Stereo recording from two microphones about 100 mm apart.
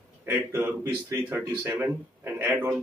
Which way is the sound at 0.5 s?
20° right (ahead or behind).